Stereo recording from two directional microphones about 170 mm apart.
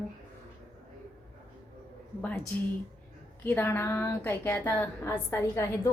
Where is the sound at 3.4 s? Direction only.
10° left (ahead or behind).